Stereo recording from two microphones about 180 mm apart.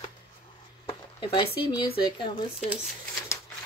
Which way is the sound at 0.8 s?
25° left (ahead or behind).